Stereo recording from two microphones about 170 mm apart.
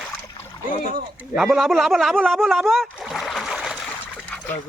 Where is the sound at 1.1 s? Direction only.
Centre (ahead or behind).